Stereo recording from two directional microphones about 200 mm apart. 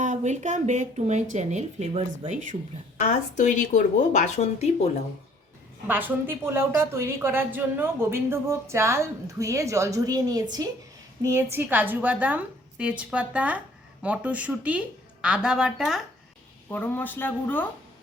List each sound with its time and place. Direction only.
0.0 s speech: 35° right (ahead or behind)
3.0 s speech: 35° left (ahead or behind)
5.9 s speech: 10° right (ahead or behind)
16.6 s speech: 10° left (ahead or behind)